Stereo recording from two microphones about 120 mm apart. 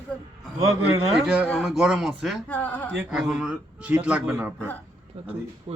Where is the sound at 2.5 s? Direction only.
10° left (ahead or behind).